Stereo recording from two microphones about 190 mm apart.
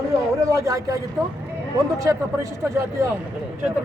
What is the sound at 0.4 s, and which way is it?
Speech, 15° right (ahead or behind).